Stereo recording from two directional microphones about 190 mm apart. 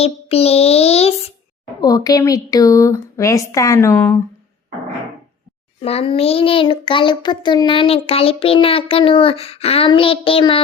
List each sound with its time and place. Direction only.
0.0 s child singing: 30° left (ahead or behind)
1.8 s a woman's voice: 20° left (ahead or behind)
5.8 s child singing: 30° left (ahead or behind)